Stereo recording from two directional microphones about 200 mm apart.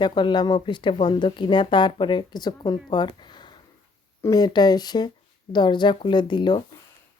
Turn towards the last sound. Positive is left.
turn(degrees=20)  # may be behind; listen again after turning